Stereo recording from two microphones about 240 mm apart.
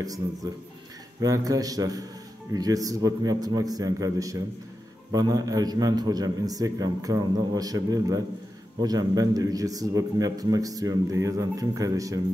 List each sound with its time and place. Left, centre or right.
0.0 s a man's voice: centre